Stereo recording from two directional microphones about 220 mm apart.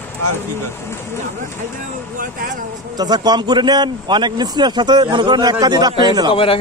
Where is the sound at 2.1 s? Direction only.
35° right (ahead or behind).